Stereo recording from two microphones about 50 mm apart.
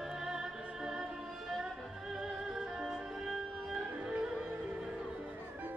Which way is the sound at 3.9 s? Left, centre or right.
Right.